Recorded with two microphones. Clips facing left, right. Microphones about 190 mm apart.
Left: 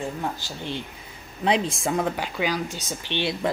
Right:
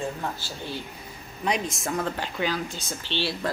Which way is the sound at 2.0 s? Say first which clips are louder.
Left 2 dB; 10° left (ahead or behind).